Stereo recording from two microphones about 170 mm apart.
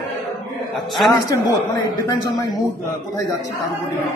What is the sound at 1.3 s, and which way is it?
Speech, 20° left (ahead or behind).